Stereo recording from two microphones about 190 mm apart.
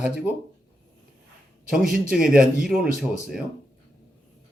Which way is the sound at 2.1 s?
5° right (ahead or behind).